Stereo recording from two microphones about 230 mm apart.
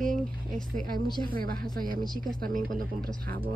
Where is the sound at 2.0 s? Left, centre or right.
Centre.